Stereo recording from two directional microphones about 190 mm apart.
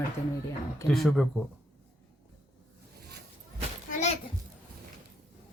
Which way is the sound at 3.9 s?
40° left (ahead or behind).